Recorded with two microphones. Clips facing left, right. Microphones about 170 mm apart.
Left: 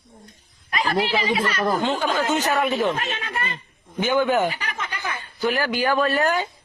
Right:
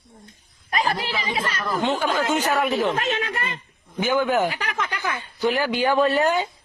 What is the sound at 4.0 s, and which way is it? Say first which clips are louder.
Speech: left 1 dB; 5° right (ahead or behind).